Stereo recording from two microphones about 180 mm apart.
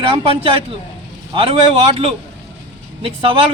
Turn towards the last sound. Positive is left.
turn(degrees=-30)  # may be behind; listen again after turning